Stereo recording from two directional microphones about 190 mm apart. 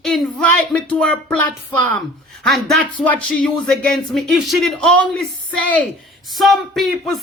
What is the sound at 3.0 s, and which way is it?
Speech, 5° left (ahead or behind).